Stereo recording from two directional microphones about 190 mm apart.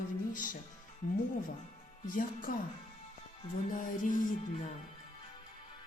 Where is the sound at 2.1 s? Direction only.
45° left (ahead or behind).